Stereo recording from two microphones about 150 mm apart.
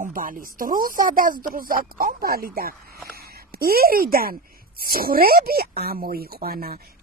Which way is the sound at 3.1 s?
90° right.